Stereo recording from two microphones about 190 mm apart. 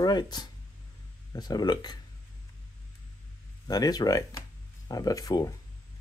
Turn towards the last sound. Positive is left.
turn(degrees=20)  # may be behind; listen again after turning